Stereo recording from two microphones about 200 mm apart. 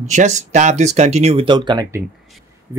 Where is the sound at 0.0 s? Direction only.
35° right (ahead or behind).